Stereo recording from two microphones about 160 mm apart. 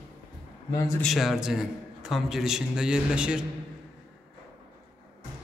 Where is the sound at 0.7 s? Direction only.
20° left (ahead or behind).